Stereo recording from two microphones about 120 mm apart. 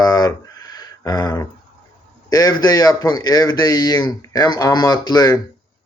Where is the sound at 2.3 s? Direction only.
35° left (ahead or behind).